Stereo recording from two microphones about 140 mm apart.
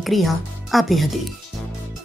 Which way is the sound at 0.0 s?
Centre (ahead or behind).